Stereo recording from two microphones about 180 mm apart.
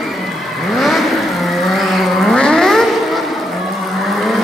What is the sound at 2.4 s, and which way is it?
Vehicle, 5° left (ahead or behind).